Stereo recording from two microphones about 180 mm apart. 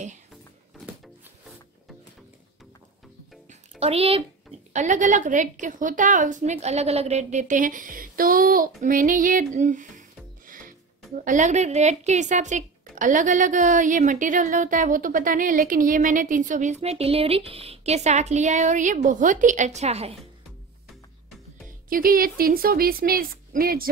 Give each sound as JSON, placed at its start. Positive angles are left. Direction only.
{"t": 3.8, "sound": "a woman's voice", "side_deg": -35}
{"t": 21.8, "sound": "a woman's voice", "side_deg": -50}